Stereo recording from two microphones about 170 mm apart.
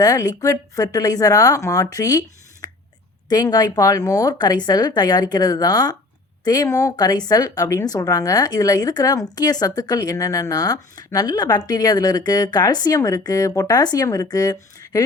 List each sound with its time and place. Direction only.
0.0 s speech: 20° left (ahead or behind)